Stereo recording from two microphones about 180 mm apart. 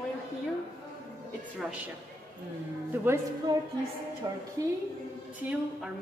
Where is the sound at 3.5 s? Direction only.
25° right (ahead or behind).